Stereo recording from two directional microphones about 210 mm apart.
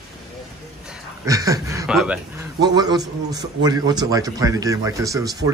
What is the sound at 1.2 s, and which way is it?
Speech, 15° right (ahead or behind).